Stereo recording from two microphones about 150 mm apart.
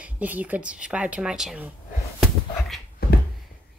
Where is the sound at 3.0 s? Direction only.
90° left.